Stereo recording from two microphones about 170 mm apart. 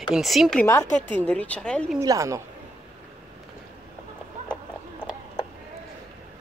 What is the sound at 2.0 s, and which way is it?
Speech, 20° right (ahead or behind).